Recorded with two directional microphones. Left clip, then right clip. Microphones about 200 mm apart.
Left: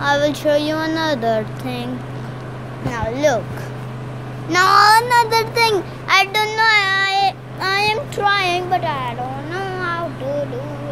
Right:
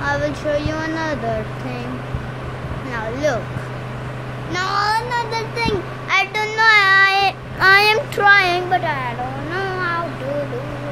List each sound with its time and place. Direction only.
0.0 s child singing: 20° left (ahead or behind)
2.9 s speech: 15° left (ahead or behind)
4.5 s a child's voice: 35° left (ahead or behind)
6.0 s a child's voice: 20° left (ahead or behind)
6.5 s child singing: 5° right (ahead or behind)